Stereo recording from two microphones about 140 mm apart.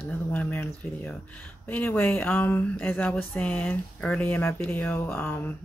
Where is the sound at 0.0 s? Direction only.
10° left (ahead or behind).